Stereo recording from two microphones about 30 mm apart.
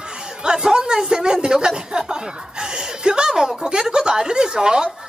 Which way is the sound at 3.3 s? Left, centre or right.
Centre.